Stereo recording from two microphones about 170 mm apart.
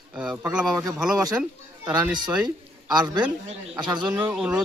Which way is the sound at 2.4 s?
25° right (ahead or behind).